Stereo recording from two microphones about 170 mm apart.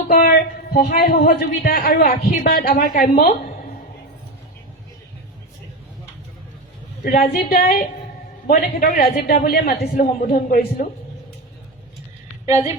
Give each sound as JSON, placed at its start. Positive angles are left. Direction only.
{"t": 0.1, "sound": "a man's voice", "side_deg": 60}
{"t": 7.0, "sound": "a man's voice", "side_deg": 55}